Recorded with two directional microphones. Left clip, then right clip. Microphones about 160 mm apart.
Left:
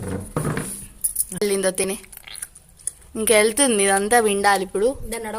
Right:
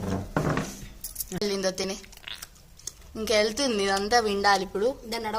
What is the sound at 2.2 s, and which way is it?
Chewing, centre (ahead or behind).